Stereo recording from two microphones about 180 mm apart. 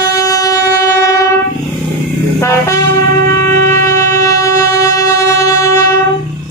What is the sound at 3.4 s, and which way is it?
Train, 15° left (ahead or behind).